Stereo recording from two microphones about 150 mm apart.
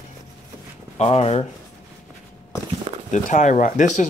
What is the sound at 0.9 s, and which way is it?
Speech, 45° left (ahead or behind).